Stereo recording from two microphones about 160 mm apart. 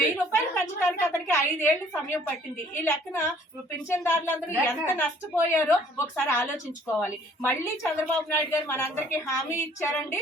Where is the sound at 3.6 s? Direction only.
15° left (ahead or behind).